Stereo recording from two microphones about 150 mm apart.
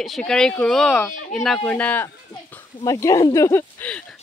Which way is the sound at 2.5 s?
20° left (ahead or behind).